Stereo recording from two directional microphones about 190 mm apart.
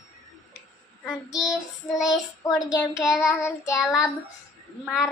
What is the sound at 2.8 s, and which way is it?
Child singing, centre (ahead or behind).